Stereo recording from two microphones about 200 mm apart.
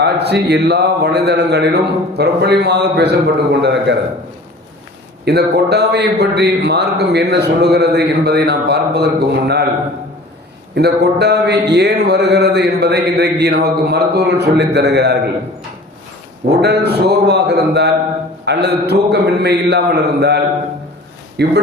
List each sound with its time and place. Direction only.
0.0 s a man's voice: 55° right (ahead or behind)
5.2 s a man's voice: 55° right (ahead or behind)
10.8 s a man's voice: 55° right (ahead or behind)
16.5 s a man's voice: 55° right (ahead or behind)